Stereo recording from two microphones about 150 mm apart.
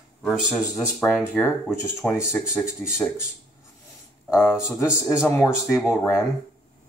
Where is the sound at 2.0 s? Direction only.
20° left (ahead or behind).